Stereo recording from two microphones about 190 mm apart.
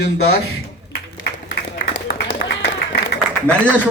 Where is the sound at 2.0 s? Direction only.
55° left (ahead or behind).